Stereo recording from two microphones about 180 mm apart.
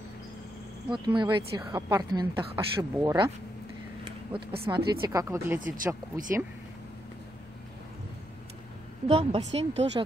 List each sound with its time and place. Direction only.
0.9 s speech: 25° right (ahead or behind)
4.7 s speech: 20° right (ahead or behind)
9.0 s speech: 35° right (ahead or behind)